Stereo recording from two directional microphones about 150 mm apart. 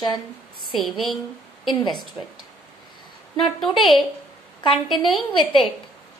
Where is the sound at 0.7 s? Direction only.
Centre (ahead or behind).